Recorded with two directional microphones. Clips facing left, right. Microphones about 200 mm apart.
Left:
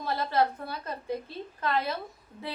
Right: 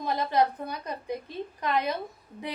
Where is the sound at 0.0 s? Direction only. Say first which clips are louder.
Right 2 dB; 15° right (ahead or behind).